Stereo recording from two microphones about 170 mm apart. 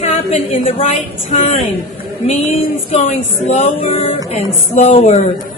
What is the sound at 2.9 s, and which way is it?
Speech, 40° left (ahead or behind).